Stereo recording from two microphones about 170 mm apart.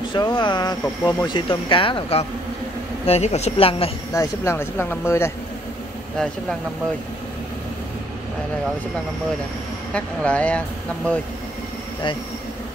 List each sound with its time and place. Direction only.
0.1 s a woman's voice: 25° left (ahead or behind)
4.1 s speech: 20° left (ahead or behind)
9.9 s speech: 5° left (ahead or behind)